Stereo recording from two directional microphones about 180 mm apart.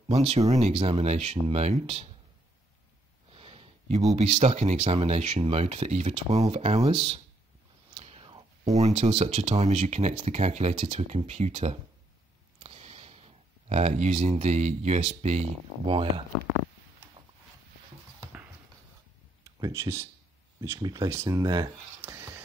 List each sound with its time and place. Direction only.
0.1 s speech: 30° right (ahead or behind)
3.3 s a sound: 30° right (ahead or behind)
4.1 s speech: 35° right (ahead or behind)
7.9 s whispering: 35° right (ahead or behind)
8.7 s speech: 40° right (ahead or behind)
12.5 s a sound: 35° right (ahead or behind)
15.9 s speech: 30° right (ahead or behind)
19.4 s speech: 15° right (ahead or behind)
22.0 s whispering: 10° right (ahead or behind)